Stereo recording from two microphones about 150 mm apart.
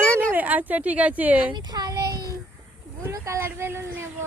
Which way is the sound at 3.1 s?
20° right (ahead or behind).